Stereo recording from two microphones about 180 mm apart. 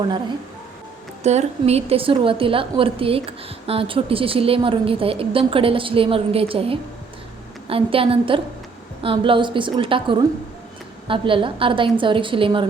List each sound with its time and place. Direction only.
1.2 s a woman's voice: 40° right (ahead or behind)